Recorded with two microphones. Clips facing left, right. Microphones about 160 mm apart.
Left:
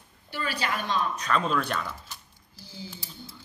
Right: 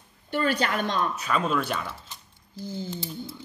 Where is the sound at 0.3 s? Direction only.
55° right (ahead or behind).